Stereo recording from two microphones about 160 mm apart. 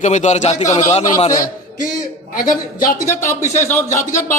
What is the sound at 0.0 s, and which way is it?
Speech, 50° left (ahead or behind).